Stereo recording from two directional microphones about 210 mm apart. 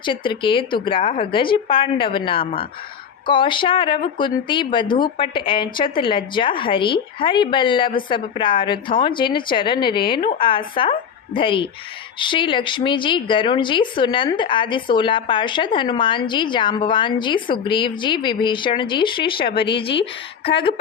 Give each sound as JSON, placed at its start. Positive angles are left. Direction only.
{"t": 0.0, "sound": "speech", "side_deg": 25}
{"t": 19.5, "sound": "speech", "side_deg": 50}